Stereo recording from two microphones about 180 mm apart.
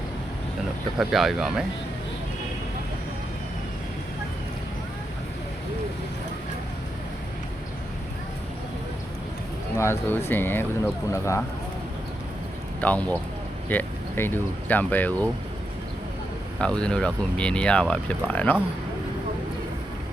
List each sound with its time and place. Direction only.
0.9 s speech: centre (ahead or behind)
9.7 s speech: 15° left (ahead or behind)
12.8 s speech: 10° left (ahead or behind)
16.6 s speech: 5° left (ahead or behind)